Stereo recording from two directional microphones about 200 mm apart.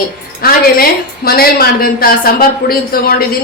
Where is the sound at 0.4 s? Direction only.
50° left (ahead or behind).